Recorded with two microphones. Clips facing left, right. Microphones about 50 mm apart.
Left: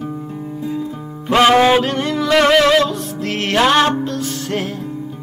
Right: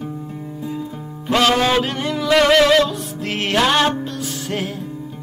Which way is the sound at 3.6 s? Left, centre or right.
Centre.